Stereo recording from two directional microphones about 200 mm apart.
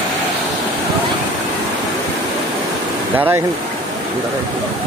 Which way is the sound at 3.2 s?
10° right (ahead or behind).